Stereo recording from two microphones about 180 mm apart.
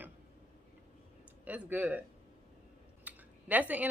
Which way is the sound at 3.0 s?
10° right (ahead or behind).